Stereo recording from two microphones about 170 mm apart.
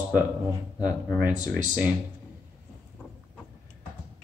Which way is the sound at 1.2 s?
10° right (ahead or behind).